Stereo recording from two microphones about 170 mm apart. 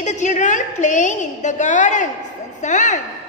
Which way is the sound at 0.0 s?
45° left (ahead or behind).